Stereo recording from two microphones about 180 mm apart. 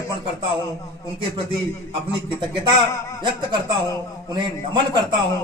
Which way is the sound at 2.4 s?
25° right (ahead or behind).